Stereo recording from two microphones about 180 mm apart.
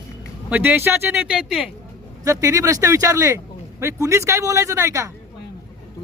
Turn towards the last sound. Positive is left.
turn(degrees=-15)  # may be behind; listen again after turning